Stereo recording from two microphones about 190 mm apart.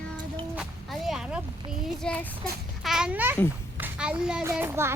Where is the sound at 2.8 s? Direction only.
Centre (ahead or behind).